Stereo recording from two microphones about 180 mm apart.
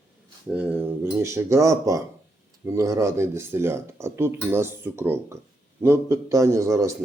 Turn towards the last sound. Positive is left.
turn(degrees=-15)  # may be behind; listen again after turning